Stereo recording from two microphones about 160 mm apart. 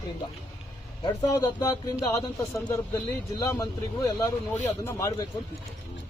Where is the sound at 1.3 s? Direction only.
20° left (ahead or behind).